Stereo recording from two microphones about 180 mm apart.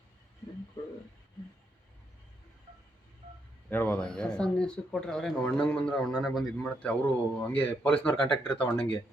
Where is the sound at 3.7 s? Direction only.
10° left (ahead or behind).